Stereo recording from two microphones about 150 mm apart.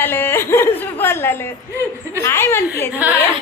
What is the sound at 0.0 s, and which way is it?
Speech, 15° left (ahead or behind).